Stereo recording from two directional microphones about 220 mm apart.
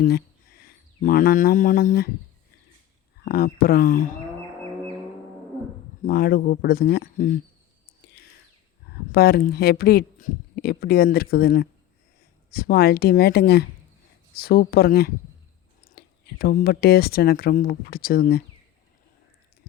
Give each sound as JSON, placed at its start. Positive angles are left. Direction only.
{"t": 0.6, "sound": "speech", "side_deg": 40}
{"t": 3.2, "sound": "speech", "side_deg": 45}
{"t": 6.0, "sound": "speech", "side_deg": 40}
{"t": 8.9, "sound": "speech", "side_deg": 45}